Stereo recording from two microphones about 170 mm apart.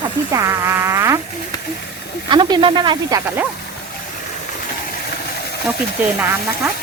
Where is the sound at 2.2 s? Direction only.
30° right (ahead or behind).